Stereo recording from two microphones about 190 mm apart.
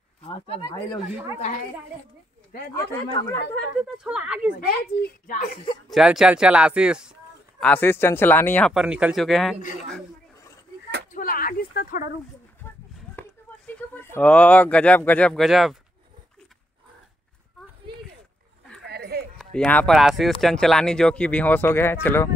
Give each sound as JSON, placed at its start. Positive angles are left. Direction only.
{"t": 0.2, "sound": "speech", "side_deg": 30}
{"t": 1.1, "sound": "speech", "side_deg": -15}
{"t": 2.7, "sound": "speech", "side_deg": 10}
{"t": 4.0, "sound": "speech", "side_deg": -5}
{"t": 4.6, "sound": "speech", "side_deg": 55}
{"t": 5.9, "sound": "speech", "side_deg": 0}
{"t": 7.6, "sound": "speech", "side_deg": 10}
{"t": 8.7, "sound": "speech", "side_deg": -5}
{"t": 11.1, "sound": "a sound", "side_deg": 50}
{"t": 13.7, "sound": "speech", "side_deg": 10}
{"t": 18.9, "sound": "a sound", "side_deg": -60}
{"t": 19.3, "sound": "speech", "side_deg": 5}